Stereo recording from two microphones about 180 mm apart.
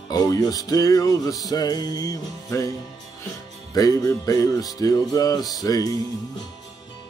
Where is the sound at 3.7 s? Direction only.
20° left (ahead or behind).